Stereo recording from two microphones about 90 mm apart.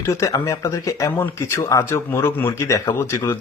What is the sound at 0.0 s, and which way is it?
Speech, 35° left (ahead or behind).